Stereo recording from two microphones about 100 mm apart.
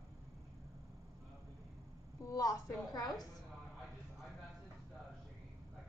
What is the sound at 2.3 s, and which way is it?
Speech, 40° left (ahead or behind).